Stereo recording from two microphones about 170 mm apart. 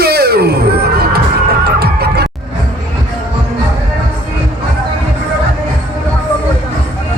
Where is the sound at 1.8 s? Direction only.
70° right (ahead or behind).